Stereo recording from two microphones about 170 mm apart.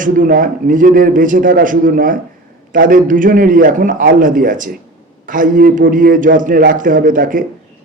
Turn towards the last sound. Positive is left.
turn(degrees=-50)  # may be behind; listen again after turning